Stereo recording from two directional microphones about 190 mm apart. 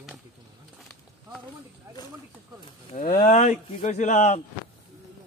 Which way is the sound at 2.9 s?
45° left (ahead or behind).